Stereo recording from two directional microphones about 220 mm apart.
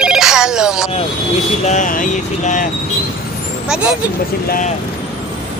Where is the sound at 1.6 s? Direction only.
35° left (ahead or behind).